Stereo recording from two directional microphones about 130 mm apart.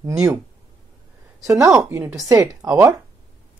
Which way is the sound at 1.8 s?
15° right (ahead or behind).